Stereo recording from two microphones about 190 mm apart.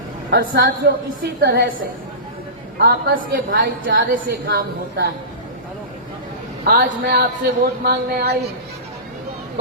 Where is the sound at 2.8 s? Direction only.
55° right (ahead or behind).